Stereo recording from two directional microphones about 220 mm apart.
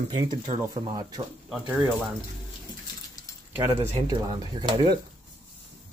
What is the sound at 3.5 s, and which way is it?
Speech, 10° right (ahead or behind).